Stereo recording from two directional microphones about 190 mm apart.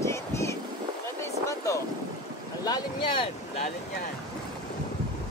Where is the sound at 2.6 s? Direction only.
20° left (ahead or behind).